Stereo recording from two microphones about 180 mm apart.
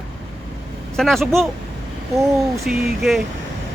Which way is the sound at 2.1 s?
15° right (ahead or behind).